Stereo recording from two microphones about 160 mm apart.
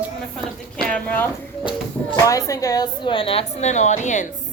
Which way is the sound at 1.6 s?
25° left (ahead or behind).